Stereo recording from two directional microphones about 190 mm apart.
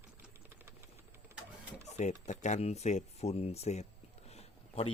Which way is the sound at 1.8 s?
35° left (ahead or behind).